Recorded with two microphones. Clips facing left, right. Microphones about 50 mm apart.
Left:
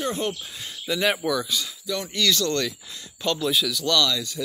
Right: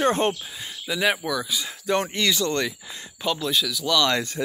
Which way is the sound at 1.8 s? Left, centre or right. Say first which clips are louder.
Right 6 dB; right.